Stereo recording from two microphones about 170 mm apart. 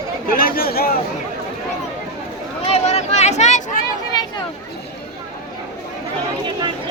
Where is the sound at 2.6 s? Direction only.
40° left (ahead or behind).